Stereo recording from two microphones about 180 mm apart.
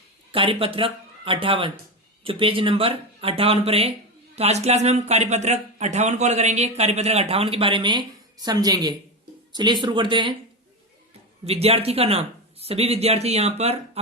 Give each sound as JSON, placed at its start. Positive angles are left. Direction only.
{"t": 0.3, "sound": "speech", "side_deg": -30}
{"t": 11.4, "sound": "speech", "side_deg": -35}